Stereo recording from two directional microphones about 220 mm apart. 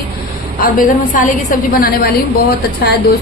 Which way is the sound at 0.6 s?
40° left (ahead or behind).